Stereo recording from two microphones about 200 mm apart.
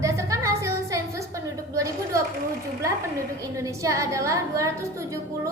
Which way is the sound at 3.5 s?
15° right (ahead or behind).